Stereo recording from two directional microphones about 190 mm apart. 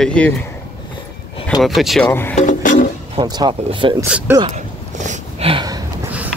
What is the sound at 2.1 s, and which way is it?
Speech, 10° left (ahead or behind).